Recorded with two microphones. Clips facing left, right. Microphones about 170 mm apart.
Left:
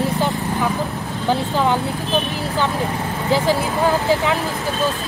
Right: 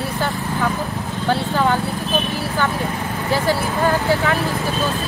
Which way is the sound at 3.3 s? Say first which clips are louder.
Left 2 dB; 15° left (ahead or behind).